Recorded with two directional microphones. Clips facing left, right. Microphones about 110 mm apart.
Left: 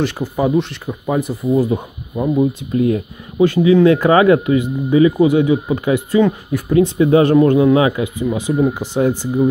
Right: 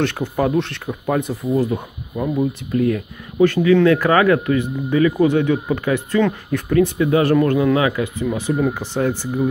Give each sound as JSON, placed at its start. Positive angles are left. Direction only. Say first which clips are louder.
{"t": 0.0, "sound": "speech", "louder": "left 1 dB", "side_deg": 0}
{"t": 1.6, "sound": "speech", "louder": "left 3 dB", "side_deg": 15}